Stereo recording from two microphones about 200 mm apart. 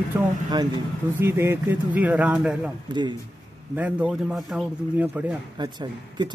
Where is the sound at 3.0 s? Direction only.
20° right (ahead or behind).